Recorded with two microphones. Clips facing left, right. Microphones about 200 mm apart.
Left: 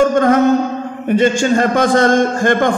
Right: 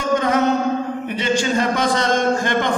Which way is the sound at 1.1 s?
50° left (ahead or behind).